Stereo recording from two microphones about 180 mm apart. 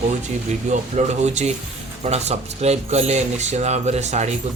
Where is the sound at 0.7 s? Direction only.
40° right (ahead or behind).